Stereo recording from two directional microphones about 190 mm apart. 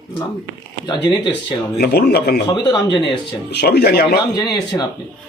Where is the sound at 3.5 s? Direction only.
60° left (ahead or behind).